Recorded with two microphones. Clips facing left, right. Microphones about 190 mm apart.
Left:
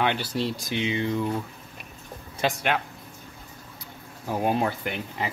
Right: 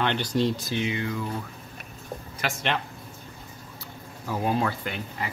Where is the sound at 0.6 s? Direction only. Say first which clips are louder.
Left 1 dB; 20° left (ahead or behind).